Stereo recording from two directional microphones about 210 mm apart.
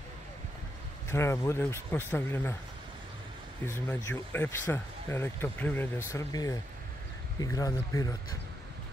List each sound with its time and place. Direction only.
1.0 s speech: 10° left (ahead or behind)
3.6 s speech: 10° left (ahead or behind)